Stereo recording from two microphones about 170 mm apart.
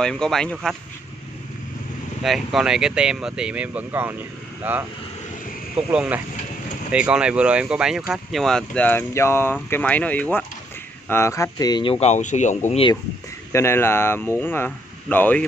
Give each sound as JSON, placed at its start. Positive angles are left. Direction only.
{"t": 0.0, "sound": "speech", "side_deg": 5}
{"t": 2.2, "sound": "speech", "side_deg": 0}
{"t": 5.9, "sound": "speech", "side_deg": -10}
{"t": 13.5, "sound": "speech", "side_deg": 15}